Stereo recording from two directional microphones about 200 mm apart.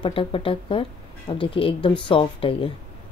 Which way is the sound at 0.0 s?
25° left (ahead or behind).